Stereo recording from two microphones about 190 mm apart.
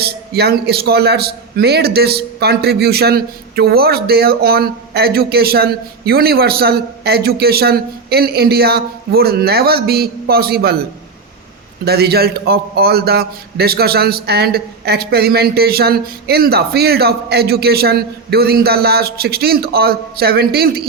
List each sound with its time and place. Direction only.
0.0 s a man's voice: 55° right (ahead or behind)
11.9 s a man's voice: 55° right (ahead or behind)